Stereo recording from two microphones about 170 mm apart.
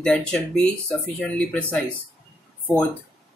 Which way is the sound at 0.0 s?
5° left (ahead or behind).